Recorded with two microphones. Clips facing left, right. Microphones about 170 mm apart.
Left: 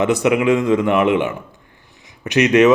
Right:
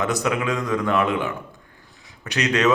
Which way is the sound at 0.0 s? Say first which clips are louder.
Left 7 dB; 15° left (ahead or behind).